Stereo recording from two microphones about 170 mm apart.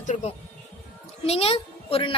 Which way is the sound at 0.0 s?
45° left (ahead or behind).